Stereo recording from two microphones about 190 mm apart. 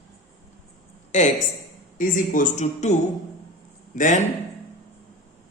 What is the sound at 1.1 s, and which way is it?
Speech, 35° left (ahead or behind).